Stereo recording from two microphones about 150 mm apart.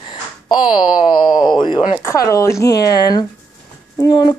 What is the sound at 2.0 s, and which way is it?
A child's voice, 20° left (ahead or behind).